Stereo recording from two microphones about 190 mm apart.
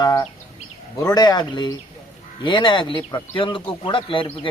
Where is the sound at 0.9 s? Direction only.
20° left (ahead or behind).